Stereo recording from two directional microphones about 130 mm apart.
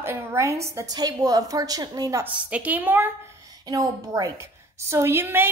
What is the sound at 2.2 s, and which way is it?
A woman's voice, 10° right (ahead or behind).